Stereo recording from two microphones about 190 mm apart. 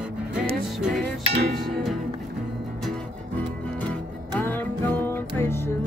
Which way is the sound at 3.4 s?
10° left (ahead or behind).